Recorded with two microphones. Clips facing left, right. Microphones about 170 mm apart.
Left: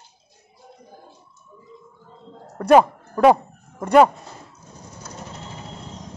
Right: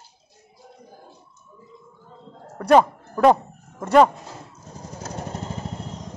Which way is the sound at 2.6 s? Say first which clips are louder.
Left 2 dB; 5° left (ahead or behind).